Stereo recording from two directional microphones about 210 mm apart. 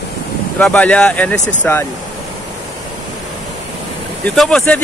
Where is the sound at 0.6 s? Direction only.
5° left (ahead or behind).